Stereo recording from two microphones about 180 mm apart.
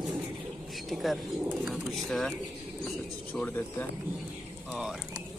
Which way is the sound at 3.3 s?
10° left (ahead or behind).